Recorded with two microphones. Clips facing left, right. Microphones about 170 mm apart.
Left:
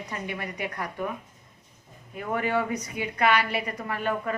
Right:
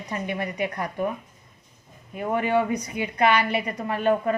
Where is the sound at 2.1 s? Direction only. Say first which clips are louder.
Right 4 dB; 25° right (ahead or behind).